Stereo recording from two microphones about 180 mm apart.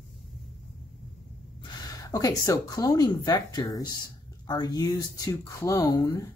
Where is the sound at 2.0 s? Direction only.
20° left (ahead or behind).